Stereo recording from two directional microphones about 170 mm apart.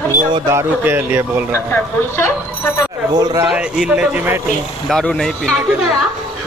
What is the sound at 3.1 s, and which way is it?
Speech, 20° right (ahead or behind).